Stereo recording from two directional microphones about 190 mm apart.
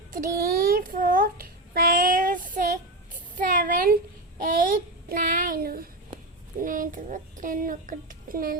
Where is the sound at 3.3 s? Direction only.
45° right (ahead or behind).